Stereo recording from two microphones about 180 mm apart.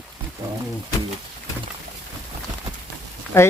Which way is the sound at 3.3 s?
15° left (ahead or behind).